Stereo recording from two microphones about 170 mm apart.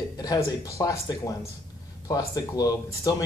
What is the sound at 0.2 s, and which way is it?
Speech, 20° left (ahead or behind).